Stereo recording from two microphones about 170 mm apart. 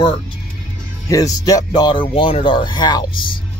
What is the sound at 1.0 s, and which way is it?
Speech, 20° left (ahead or behind).